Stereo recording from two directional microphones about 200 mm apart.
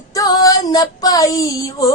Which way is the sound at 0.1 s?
20° left (ahead or behind).